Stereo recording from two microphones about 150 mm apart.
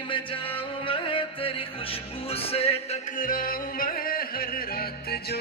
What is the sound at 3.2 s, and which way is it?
Music, 70° left (ahead or behind).